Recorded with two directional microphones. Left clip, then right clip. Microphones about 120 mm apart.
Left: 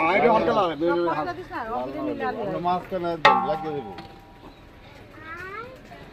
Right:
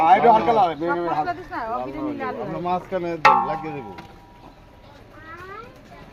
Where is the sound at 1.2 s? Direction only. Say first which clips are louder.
Right 4 dB; 30° right (ahead or behind).